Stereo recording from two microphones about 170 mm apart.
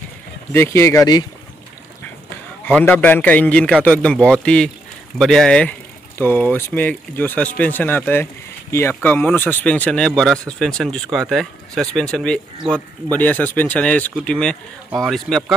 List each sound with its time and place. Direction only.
0.5 s speech: 15° left (ahead or behind)
2.6 s speech: 10° left (ahead or behind)